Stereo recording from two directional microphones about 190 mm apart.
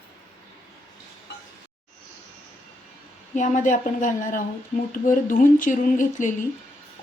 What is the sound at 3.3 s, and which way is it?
Speech, 40° left (ahead or behind).